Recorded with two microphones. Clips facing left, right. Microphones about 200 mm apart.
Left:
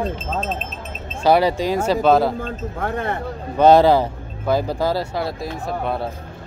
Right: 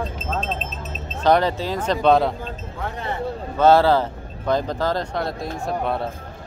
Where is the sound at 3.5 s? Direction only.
15° left (ahead or behind).